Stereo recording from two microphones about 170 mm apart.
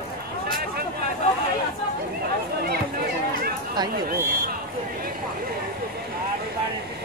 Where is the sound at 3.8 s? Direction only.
25° right (ahead or behind).